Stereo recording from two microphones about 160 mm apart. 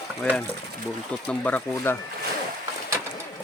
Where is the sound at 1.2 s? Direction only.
10° left (ahead or behind).